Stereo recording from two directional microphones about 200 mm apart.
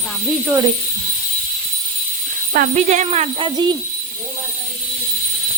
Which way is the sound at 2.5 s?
40° right (ahead or behind).